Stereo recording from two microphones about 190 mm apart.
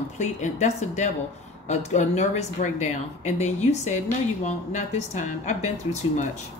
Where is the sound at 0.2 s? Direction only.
40° left (ahead or behind).